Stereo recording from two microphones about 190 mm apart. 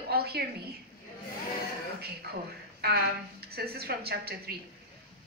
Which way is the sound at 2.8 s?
55° right (ahead or behind).